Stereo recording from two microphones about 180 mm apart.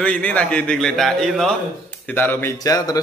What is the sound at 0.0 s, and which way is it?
A man's voice, 5° left (ahead or behind).